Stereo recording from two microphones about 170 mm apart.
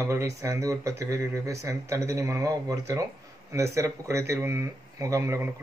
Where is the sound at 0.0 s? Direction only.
20° right (ahead or behind).